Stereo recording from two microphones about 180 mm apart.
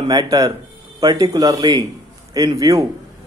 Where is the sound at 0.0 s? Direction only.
20° right (ahead or behind).